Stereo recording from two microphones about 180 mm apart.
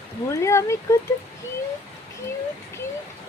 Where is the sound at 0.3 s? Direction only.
15° left (ahead or behind).